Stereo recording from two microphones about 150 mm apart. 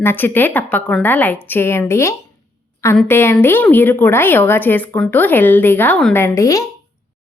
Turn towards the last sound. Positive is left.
turn(degrees=20)  # may be behind; listen again after turning